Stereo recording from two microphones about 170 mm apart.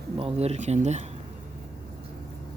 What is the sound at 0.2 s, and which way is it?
Speech, 35° right (ahead or behind).